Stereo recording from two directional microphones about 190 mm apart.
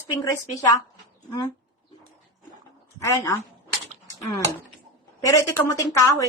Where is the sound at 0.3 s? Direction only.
20° left (ahead or behind).